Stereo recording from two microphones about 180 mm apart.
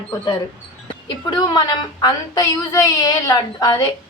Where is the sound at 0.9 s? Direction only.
25° left (ahead or behind).